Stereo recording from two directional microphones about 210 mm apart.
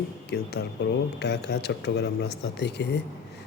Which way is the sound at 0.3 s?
55° left (ahead or behind).